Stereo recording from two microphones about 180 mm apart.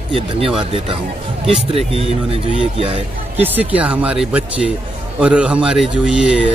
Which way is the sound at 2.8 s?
30° right (ahead or behind).